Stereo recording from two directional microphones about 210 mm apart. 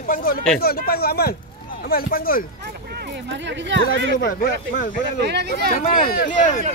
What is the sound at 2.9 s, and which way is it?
Speech, 55° right (ahead or behind).